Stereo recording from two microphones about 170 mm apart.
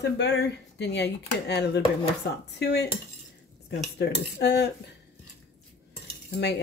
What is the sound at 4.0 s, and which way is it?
Speech, 85° left.